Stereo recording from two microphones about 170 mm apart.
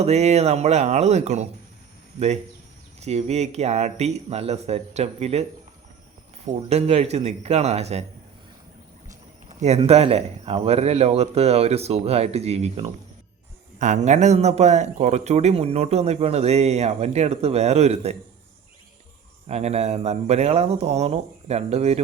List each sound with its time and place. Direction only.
0.0 s a man's voice: 40° right (ahead or behind)
9.0 s speech: 40° right (ahead or behind)
19.5 s speech: 40° right (ahead or behind)